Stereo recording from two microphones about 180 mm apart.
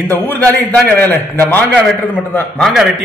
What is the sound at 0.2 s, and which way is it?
A man's voice, 10° left (ahead or behind).